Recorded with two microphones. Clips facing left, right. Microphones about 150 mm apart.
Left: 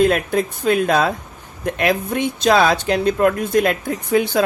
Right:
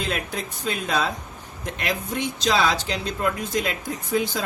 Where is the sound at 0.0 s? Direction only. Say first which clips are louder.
Left 12 dB; 55° left (ahead or behind).